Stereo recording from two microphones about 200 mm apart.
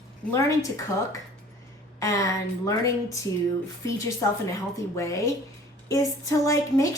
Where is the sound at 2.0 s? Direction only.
15° left (ahead or behind).